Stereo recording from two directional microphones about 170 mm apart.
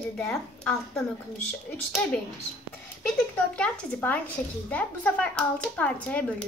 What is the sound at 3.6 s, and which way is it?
Speech, 10° left (ahead or behind).